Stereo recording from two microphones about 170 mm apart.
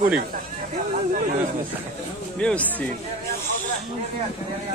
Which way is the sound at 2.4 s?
10° left (ahead or behind).